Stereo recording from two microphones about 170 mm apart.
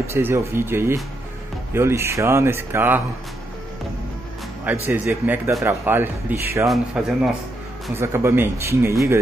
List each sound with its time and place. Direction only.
0.1 s speech: 15° right (ahead or behind)
4.8 s speech: 10° right (ahead or behind)
6.7 s a man's voice: 5° right (ahead or behind)
7.9 s speech: 15° right (ahead or behind)